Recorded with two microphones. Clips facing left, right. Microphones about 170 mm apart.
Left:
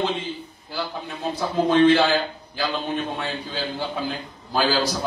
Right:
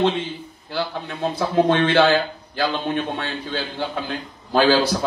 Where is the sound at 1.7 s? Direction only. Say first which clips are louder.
Left 3 dB; 60° right (ahead or behind).